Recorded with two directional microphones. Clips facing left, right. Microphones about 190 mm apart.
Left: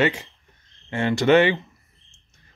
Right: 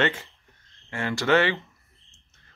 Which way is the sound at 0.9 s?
20° left (ahead or behind).